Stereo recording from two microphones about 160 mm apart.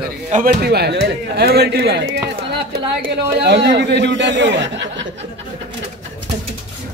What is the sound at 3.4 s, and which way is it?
Speech, 90° right.